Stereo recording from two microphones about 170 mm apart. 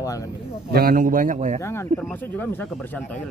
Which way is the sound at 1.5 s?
15° left (ahead or behind).